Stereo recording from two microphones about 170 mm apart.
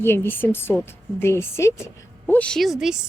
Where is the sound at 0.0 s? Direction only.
15° left (ahead or behind).